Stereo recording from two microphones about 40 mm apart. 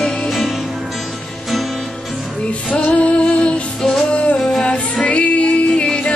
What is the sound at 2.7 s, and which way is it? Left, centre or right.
Music, left.